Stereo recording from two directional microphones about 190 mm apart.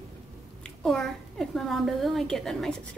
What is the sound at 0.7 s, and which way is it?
A woman's voice, centre (ahead or behind).